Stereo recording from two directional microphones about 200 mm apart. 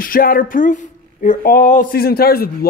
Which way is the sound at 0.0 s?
45° left (ahead or behind).